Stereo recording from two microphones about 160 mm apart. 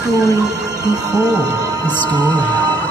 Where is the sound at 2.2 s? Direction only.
10° left (ahead or behind).